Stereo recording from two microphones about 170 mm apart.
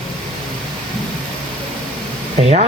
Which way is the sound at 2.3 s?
40° right (ahead or behind).